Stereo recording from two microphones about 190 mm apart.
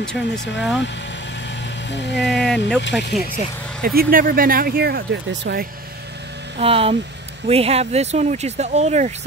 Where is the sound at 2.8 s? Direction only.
65° left (ahead or behind).